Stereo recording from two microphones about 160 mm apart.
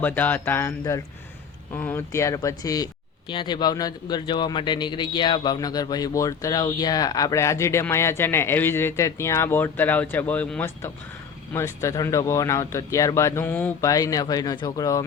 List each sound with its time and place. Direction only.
0.0 s speech: 10° left (ahead or behind)
13.9 s speech: 25° left (ahead or behind)